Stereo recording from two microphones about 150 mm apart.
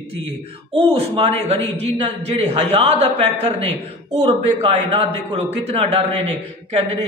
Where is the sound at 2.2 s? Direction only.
40° right (ahead or behind).